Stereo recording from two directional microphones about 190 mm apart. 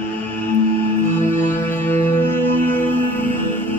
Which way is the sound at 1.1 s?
10° left (ahead or behind).